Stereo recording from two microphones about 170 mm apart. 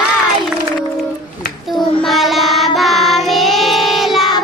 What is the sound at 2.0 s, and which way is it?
Child singing, centre (ahead or behind).